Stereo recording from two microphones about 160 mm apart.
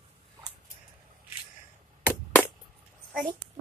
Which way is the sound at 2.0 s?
10° left (ahead or behind).